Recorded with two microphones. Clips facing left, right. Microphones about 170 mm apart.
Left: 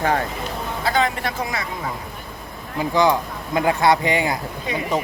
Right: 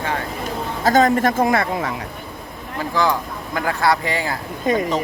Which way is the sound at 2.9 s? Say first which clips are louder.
Left 2 dB; 20° left (ahead or behind).